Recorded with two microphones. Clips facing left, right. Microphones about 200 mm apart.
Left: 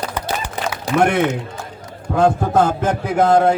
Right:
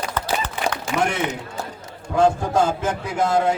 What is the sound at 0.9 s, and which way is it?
A man's voice, 60° left (ahead or behind).